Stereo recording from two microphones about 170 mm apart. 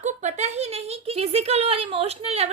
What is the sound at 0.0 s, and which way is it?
A woman's voice, 45° right (ahead or behind).